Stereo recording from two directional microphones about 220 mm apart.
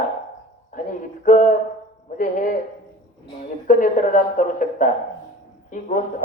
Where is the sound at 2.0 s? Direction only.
35° left (ahead or behind).